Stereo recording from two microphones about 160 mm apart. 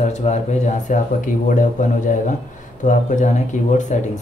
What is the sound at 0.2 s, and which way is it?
Speech, 45° left (ahead or behind).